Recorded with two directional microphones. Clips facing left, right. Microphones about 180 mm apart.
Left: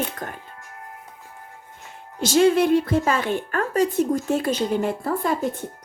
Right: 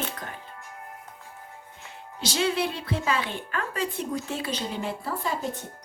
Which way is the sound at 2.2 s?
50° left (ahead or behind).